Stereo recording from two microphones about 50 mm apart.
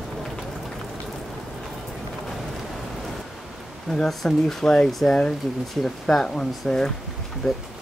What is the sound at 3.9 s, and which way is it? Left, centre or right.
Speech, centre.